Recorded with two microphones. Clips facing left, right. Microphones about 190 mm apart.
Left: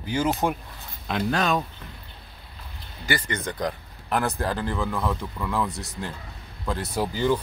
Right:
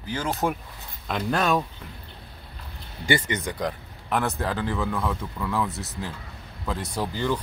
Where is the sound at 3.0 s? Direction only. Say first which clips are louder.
Right 3 dB; 25° right (ahead or behind).